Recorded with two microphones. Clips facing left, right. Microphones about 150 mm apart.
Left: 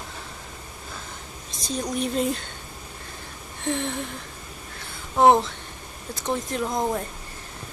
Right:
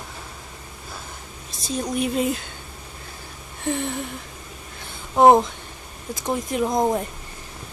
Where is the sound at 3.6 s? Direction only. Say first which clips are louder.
Right 2 dB; 5° right (ahead or behind).